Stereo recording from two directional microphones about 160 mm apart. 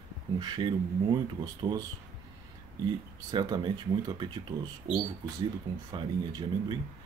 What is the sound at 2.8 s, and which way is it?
Speech, 25° right (ahead or behind).